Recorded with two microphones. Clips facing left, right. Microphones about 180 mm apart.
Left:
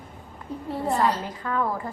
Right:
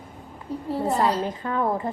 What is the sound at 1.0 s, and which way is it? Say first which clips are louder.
Speech: even; 35° right (ahead or behind).